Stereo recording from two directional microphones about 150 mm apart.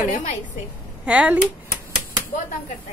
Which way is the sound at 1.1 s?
5° right (ahead or behind).